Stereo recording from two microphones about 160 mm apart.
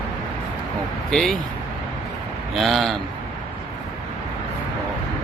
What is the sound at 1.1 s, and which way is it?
Speech, centre (ahead or behind).